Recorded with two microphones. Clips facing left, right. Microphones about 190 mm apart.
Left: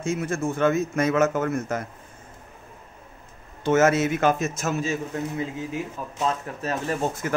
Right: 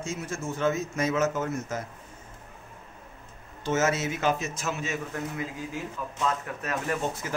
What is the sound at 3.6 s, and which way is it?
A man's voice, 55° left (ahead or behind).